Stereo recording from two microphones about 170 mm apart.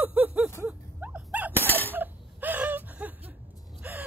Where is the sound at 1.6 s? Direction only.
10° left (ahead or behind).